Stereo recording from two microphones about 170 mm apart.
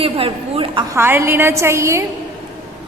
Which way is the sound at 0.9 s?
15° right (ahead or behind).